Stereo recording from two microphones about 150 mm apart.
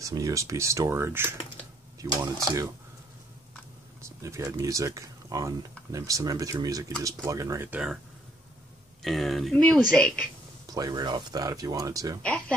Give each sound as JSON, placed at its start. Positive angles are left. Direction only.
{"t": 0.0, "sound": "speech", "side_deg": -20}
{"t": 4.0, "sound": "speech", "side_deg": -20}
{"t": 9.0, "sound": "speech", "side_deg": 0}
{"t": 10.7, "sound": "speech", "side_deg": -25}
{"t": 12.2, "sound": "speech", "side_deg": 5}